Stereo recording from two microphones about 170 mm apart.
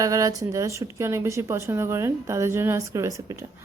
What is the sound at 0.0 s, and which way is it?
A woman's voice, 20° right (ahead or behind).